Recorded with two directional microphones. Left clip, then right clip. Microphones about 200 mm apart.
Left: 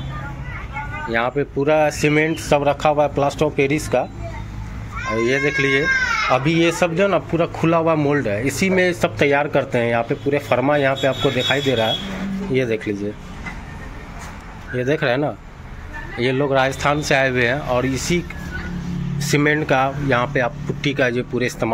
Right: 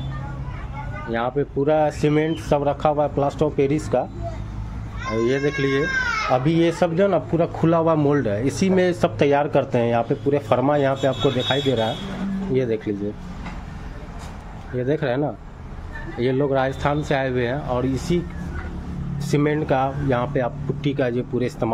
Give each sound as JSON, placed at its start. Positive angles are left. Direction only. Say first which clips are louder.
{"t": 1.0, "sound": "speech", "louder": "left 3 dB", "side_deg": -10}
{"t": 5.1, "sound": "speech", "louder": "left 3 dB", "side_deg": -15}
{"t": 14.8, "sound": "speech", "louder": "left 3 dB", "side_deg": -5}